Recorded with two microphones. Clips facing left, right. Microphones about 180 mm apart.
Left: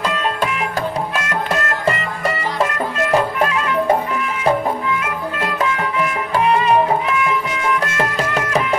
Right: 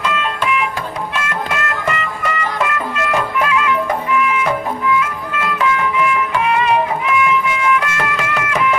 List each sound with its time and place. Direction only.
0.0 s music: 40° left (ahead or behind)
5.4 s music: 40° left (ahead or behind)